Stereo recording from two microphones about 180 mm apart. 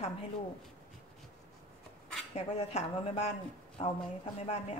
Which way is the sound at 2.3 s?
35° left (ahead or behind).